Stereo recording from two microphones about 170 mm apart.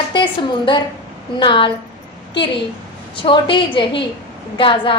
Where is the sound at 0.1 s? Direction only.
25° left (ahead or behind).